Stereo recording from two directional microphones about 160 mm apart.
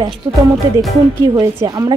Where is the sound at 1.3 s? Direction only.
20° right (ahead or behind).